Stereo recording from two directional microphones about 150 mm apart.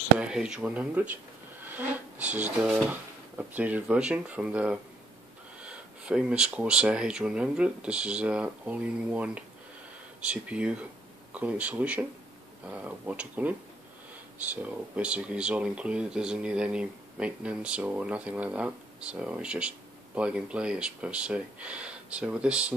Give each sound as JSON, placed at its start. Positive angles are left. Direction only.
{"t": 0.2, "sound": "speech", "side_deg": -5}
{"t": 1.6, "sound": "a sound", "side_deg": -10}
{"t": 2.2, "sound": "speech", "side_deg": -10}